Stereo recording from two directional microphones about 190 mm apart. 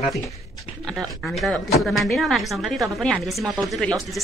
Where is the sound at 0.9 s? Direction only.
Centre (ahead or behind).